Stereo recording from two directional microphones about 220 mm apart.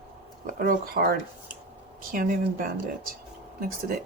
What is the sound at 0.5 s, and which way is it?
Speech, 40° right (ahead or behind).